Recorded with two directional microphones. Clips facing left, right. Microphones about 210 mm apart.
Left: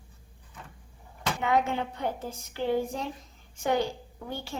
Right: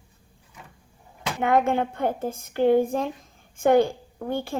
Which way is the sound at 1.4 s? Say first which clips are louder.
Right 6 dB; 50° right (ahead or behind).